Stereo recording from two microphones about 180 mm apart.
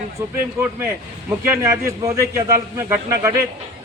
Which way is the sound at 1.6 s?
15° right (ahead or behind).